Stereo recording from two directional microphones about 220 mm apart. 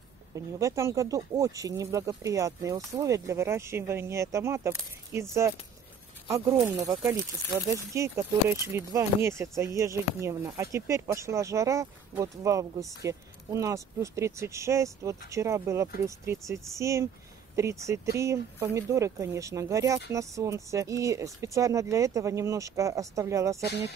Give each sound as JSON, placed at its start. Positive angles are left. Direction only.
{"t": 0.6, "sound": "speech", "side_deg": -15}
{"t": 6.2, "sound": "speech", "side_deg": -15}
{"t": 23.6, "sound": "speech", "side_deg": -50}